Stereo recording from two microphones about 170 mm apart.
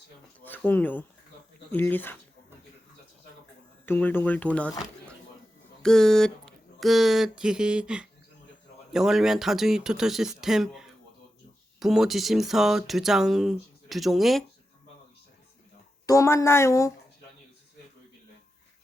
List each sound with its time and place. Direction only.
0.4 s speech: 10° left (ahead or behind)
3.8 s speech: 10° left (ahead or behind)
5.8 s speech: 5° left (ahead or behind)
16.0 s speech: 15° left (ahead or behind)